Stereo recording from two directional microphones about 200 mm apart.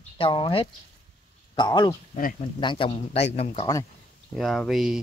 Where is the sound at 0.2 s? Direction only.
25° left (ahead or behind).